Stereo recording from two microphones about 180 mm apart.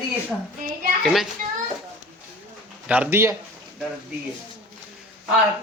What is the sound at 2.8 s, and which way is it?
Speech, 10° right (ahead or behind).